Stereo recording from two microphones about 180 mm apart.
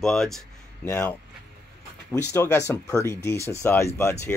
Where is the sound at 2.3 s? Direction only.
15° left (ahead or behind).